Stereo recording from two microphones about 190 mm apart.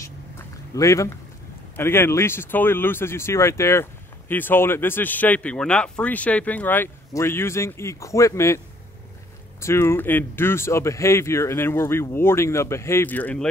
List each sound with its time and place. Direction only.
0.7 s speech: 15° left (ahead or behind)
9.6 s speech: 15° left (ahead or behind)